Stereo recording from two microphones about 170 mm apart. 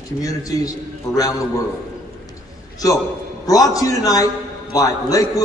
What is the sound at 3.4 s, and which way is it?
A man's voice, 20° left (ahead or behind).